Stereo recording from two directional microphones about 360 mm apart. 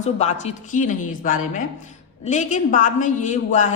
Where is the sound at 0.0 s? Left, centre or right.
Centre.